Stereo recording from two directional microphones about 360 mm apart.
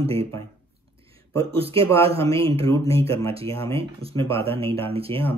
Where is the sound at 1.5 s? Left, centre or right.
Centre.